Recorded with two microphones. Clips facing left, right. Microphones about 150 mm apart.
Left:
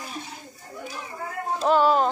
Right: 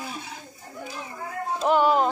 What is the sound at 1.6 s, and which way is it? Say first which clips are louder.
Speech: left 1 dB; 15° right (ahead or behind).